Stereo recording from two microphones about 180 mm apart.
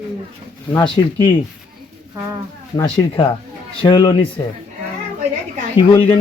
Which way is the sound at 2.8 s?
25° left (ahead or behind).